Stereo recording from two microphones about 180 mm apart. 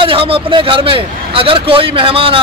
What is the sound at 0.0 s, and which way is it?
A man's voice, 30° right (ahead or behind).